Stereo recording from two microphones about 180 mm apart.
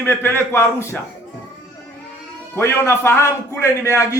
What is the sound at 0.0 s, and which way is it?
Speech, 15° left (ahead or behind).